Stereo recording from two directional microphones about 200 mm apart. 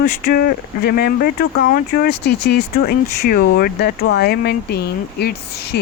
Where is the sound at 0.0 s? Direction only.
45° left (ahead or behind).